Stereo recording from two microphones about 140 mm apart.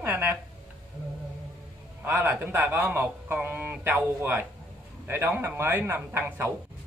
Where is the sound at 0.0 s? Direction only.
15° right (ahead or behind).